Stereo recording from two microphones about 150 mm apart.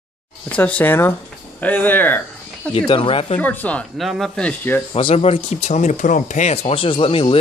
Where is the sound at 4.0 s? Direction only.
Centre (ahead or behind).